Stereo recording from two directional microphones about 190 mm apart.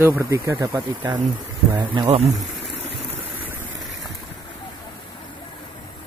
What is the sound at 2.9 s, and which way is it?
Vehicle, 10° right (ahead or behind).